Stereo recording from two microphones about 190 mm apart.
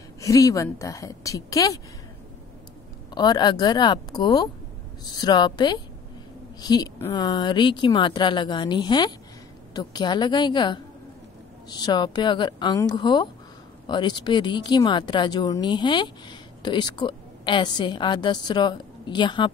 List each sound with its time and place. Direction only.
0.2 s a woman's voice: 15° left (ahead or behind)
3.1 s speech: 20° left (ahead or behind)